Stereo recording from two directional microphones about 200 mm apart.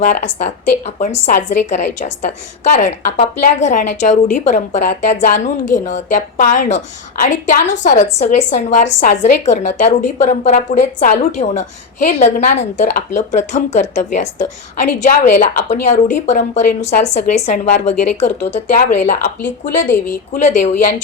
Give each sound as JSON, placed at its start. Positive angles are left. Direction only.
{"t": 0.0, "sound": "a woman's voice", "side_deg": 40}
{"t": 20.3, "sound": "a woman's voice", "side_deg": 35}